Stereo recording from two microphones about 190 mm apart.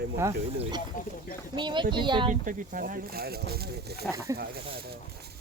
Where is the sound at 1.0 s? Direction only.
45° left (ahead or behind).